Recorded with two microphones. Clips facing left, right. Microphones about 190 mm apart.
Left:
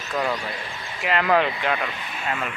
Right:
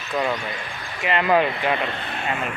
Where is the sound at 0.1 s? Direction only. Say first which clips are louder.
Right 1 dB; centre (ahead or behind).